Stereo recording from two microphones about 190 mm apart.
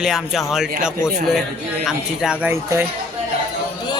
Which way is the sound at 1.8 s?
Centre (ahead or behind).